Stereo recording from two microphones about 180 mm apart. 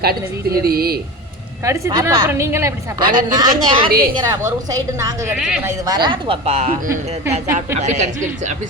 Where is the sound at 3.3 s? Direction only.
25° right (ahead or behind).